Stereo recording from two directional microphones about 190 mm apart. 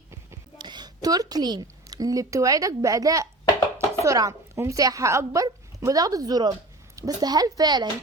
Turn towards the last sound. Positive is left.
turn(degrees=-20)  # may be behind; listen again after turning